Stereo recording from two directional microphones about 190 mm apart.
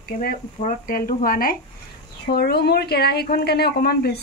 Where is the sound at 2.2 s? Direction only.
55° left (ahead or behind).